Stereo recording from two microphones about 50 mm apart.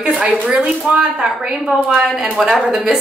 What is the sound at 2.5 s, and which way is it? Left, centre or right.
Speech, centre.